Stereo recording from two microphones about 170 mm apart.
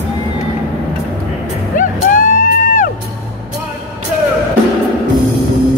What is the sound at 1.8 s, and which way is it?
Music, 50° left (ahead or behind).